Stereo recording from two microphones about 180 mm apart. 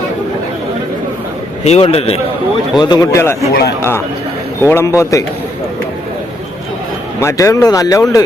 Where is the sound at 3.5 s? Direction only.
65° left (ahead or behind).